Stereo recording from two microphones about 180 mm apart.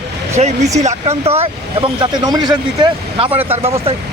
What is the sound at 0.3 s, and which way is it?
Speech, 40° right (ahead or behind).